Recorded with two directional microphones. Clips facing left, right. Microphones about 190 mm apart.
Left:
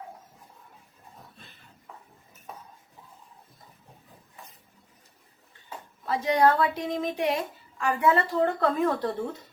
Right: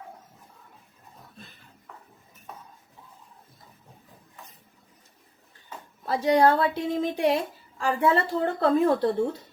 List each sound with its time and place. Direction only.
6.1 s a woman's voice: 30° right (ahead or behind)